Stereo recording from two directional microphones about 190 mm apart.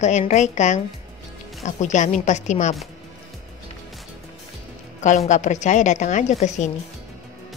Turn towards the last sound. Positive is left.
turn(degrees=40)  # may be behind; listen again after turning